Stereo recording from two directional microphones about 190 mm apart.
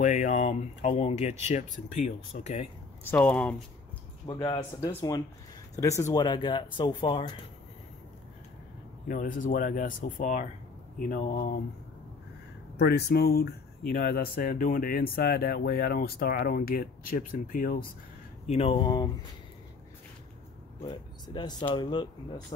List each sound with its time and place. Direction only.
0.0 s speech: 40° left (ahead or behind)
3.0 s speech: 10° left (ahead or behind)
4.3 s speech: 20° left (ahead or behind)
9.0 s speech: 45° left (ahead or behind)
12.7 s speech: 60° left (ahead or behind)
18.5 s speech: 30° left (ahead or behind)
20.8 s speech: 25° left (ahead or behind)